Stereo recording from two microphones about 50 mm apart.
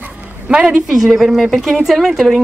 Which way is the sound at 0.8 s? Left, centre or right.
Centre.